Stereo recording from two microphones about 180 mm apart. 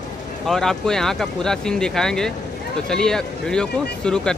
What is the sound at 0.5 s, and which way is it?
Speech, 5° left (ahead or behind).